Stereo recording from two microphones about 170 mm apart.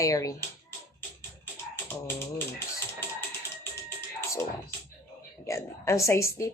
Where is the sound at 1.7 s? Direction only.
15° left (ahead or behind).